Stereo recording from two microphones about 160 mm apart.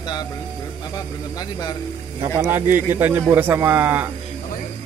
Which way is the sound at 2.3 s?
15° right (ahead or behind).